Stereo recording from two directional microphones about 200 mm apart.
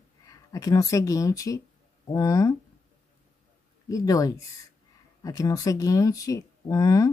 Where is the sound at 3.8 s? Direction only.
15° left (ahead or behind).